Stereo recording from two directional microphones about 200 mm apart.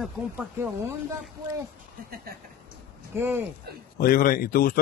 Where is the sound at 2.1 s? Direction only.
50° right (ahead or behind).